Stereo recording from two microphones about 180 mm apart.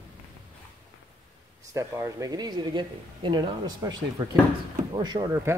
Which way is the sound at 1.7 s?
20° right (ahead or behind).